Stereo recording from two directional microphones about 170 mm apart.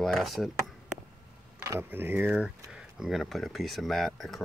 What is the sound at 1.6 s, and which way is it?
Speech, 15° right (ahead or behind).